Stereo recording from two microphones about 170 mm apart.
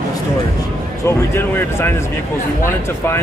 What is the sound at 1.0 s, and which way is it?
Speech, 15° left (ahead or behind).